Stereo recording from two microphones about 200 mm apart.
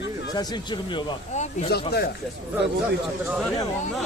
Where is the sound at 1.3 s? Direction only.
35° left (ahead or behind).